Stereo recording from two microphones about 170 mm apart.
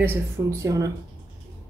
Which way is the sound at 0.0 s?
15° right (ahead or behind).